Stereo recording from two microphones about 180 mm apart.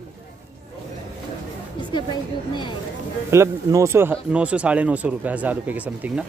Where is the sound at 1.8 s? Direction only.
25° left (ahead or behind).